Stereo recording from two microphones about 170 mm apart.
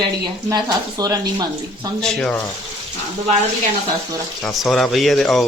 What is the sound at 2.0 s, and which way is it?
Speech, 5° left (ahead or behind).